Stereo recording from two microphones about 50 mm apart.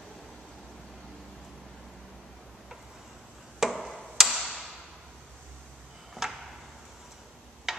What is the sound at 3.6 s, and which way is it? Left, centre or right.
Tick-tock, centre.